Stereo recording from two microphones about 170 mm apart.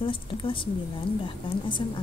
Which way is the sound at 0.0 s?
30° left (ahead or behind).